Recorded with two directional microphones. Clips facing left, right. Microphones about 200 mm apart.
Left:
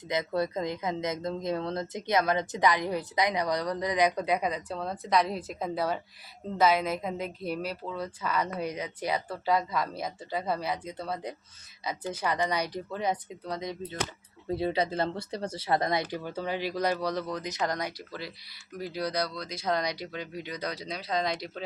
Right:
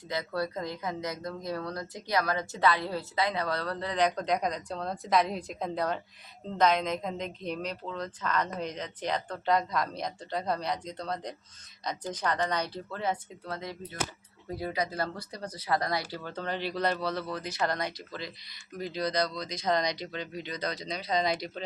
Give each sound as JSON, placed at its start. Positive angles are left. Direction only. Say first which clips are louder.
{"t": 0.1, "sound": "a woman's voice", "louder": "left 3 dB", "side_deg": 20}